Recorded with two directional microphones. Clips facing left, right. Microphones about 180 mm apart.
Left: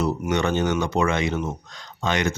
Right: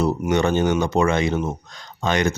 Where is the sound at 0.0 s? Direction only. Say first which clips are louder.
Right 3 dB; 30° right (ahead or behind).